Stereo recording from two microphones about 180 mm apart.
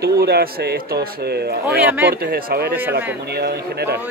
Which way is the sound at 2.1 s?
55° right (ahead or behind).